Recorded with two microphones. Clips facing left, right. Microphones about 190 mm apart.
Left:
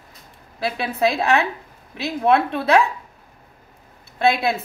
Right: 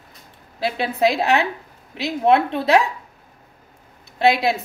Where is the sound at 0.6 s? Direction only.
20° right (ahead or behind).